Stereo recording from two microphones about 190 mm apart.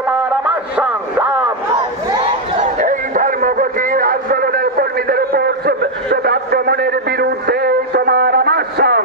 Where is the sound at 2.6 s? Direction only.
40° right (ahead or behind).